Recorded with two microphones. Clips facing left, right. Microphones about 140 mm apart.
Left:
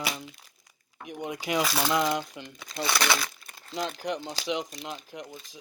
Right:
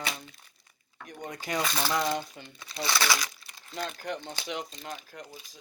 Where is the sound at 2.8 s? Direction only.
20° left (ahead or behind).